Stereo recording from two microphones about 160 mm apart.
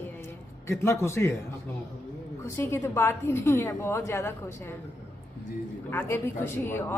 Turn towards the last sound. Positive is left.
turn(degrees=15)  # may be behind; listen again after turning